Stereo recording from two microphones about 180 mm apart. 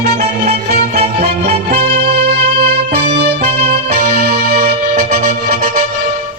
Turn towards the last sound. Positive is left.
turn(degrees=-60)  # may be behind; listen again after turning